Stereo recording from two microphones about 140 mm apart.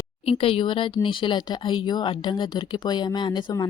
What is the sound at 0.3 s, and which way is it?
Speech, 40° left (ahead or behind).